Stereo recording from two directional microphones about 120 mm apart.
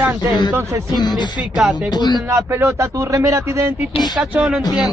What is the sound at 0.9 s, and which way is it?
Speech, 35° left (ahead or behind).